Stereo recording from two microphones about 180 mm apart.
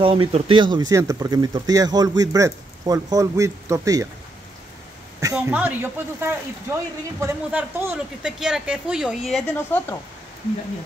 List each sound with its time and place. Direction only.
0.0 s speech: 30° right (ahead or behind)
5.2 s a woman's voice: 15° right (ahead or behind)
9.6 s speech: 10° left (ahead or behind)